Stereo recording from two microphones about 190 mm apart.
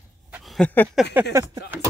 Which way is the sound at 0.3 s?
Centre (ahead or behind).